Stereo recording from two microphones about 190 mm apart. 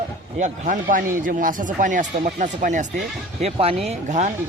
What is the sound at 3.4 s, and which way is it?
Speech, 30° right (ahead or behind).